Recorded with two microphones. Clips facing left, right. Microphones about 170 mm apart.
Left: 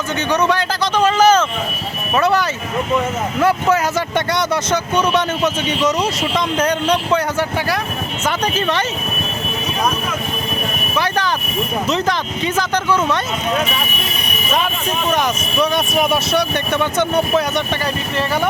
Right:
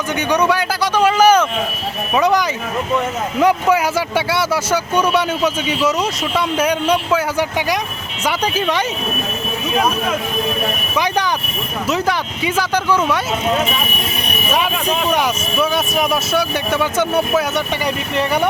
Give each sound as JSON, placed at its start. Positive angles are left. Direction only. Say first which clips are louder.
{"t": 0.2, "sound": "speech", "louder": "right 1 dB", "side_deg": -10}
{"t": 10.9, "sound": "speech", "louder": "even", "side_deg": -15}
{"t": 15.1, "sound": "speech", "louder": "even", "side_deg": -5}